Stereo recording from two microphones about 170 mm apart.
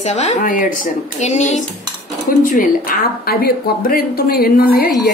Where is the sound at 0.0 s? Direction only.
40° left (ahead or behind).